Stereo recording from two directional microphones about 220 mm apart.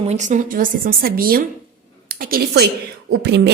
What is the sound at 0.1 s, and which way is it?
A woman's voice, 35° right (ahead or behind).